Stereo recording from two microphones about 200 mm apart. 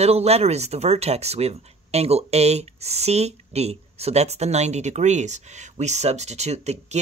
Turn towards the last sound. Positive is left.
turn(degrees=-35)  # may be behind; listen again after turning